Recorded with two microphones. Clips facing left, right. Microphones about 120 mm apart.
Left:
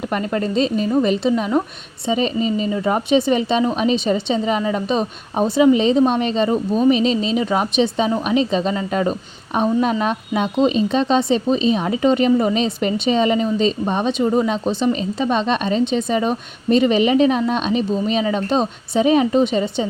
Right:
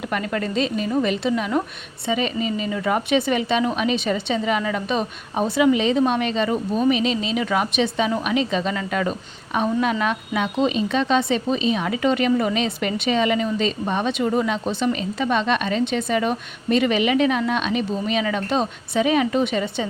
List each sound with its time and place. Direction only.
0.1 s a woman's voice: 30° left (ahead or behind)